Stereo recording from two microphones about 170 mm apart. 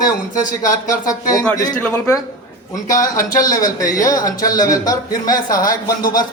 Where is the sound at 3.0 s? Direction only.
55° left (ahead or behind).